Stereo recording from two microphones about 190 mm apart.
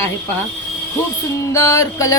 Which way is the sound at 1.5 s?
15° left (ahead or behind).